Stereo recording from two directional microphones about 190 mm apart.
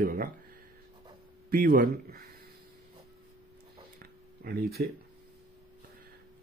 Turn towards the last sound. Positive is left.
turn(degrees=-55)  # may be behind; listen again after turning